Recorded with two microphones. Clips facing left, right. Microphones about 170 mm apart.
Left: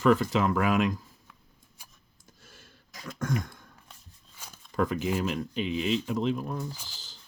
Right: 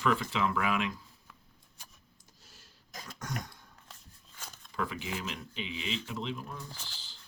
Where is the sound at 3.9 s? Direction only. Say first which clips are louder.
Even; 10° left (ahead or behind).